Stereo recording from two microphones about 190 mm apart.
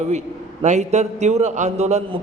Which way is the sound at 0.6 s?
35° right (ahead or behind).